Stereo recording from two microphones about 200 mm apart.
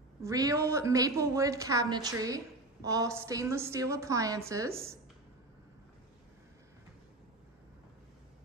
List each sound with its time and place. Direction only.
0.2 s a woman's voice: 15° right (ahead or behind)